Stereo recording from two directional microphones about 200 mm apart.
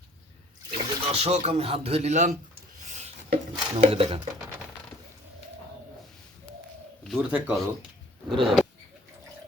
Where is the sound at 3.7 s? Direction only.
30° right (ahead or behind).